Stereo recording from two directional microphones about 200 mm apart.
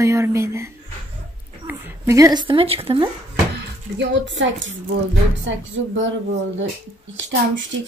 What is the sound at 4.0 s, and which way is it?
Speech, 65° right (ahead or behind).